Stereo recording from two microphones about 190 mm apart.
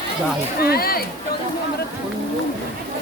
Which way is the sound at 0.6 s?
55° left (ahead or behind).